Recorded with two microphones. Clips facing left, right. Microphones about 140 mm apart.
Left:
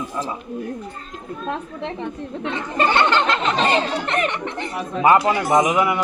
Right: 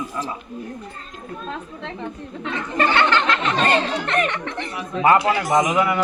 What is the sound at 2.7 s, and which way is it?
Speech, 20° left (ahead or behind).